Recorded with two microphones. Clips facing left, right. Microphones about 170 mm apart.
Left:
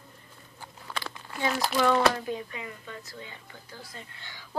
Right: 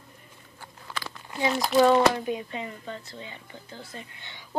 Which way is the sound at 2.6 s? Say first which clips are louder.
Right 4 dB; 30° right (ahead or behind).